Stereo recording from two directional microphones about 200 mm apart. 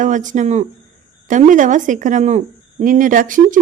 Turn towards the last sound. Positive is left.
turn(degrees=-40)  # may be behind; listen again after turning